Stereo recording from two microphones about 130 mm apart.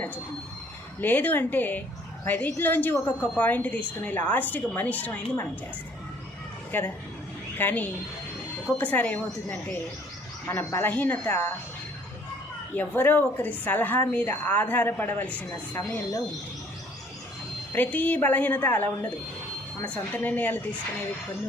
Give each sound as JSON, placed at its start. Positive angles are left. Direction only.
{"t": 1.0, "sound": "speech", "side_deg": 15}
{"t": 6.7, "sound": "speech", "side_deg": 15}
{"t": 12.7, "sound": "speech", "side_deg": 15}
{"t": 15.8, "sound": "speech", "side_deg": 25}
{"t": 17.7, "sound": "speech", "side_deg": 15}
{"t": 20.1, "sound": "speech", "side_deg": 10}